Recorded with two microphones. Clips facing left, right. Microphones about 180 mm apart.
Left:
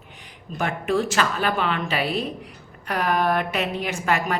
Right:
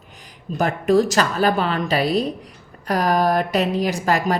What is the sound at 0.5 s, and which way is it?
A woman's voice, 40° right (ahead or behind).